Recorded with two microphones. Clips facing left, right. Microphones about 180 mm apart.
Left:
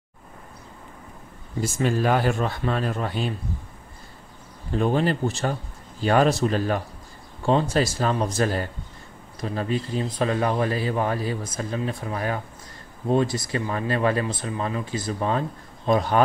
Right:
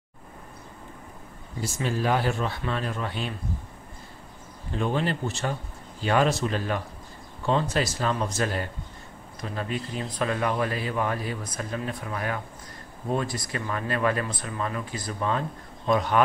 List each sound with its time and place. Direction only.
1.6 s speech: 50° left (ahead or behind)
4.7 s speech: 40° left (ahead or behind)